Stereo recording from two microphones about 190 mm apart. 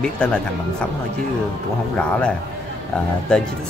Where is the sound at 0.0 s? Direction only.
5° left (ahead or behind).